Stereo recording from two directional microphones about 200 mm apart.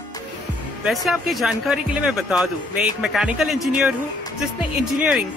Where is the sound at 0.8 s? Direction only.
Centre (ahead or behind).